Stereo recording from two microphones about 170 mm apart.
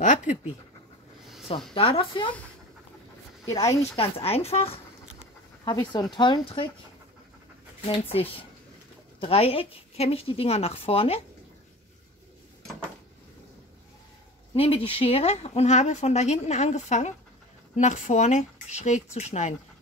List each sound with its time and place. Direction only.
0.0 s speech: 45° left (ahead or behind)
1.7 s speech: 30° left (ahead or behind)
3.4 s speech: 20° left (ahead or behind)
3.9 s speech: 35° left (ahead or behind)
5.7 s speech: 25° left (ahead or behind)
7.8 s speech: 35° left (ahead or behind)
14.5 s speech: 35° left (ahead or behind)